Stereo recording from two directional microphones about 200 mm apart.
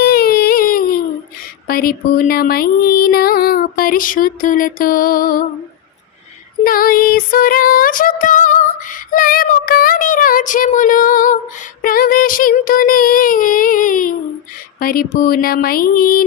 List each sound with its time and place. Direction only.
0.0 s a sound: 50° left (ahead or behind)
1.6 s female singing: 50° left (ahead or behind)
6.7 s female singing: 45° left (ahead or behind)